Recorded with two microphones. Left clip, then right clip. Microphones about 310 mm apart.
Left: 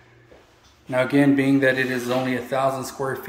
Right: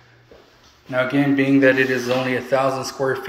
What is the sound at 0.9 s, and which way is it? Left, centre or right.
A man's voice, left.